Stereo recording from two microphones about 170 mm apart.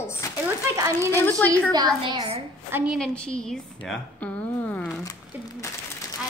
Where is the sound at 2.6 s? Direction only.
10° right (ahead or behind).